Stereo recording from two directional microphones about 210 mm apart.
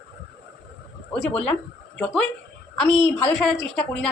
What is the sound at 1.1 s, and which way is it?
Speech, 5° left (ahead or behind).